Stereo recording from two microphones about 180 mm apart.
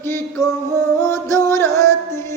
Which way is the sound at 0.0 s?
10° left (ahead or behind).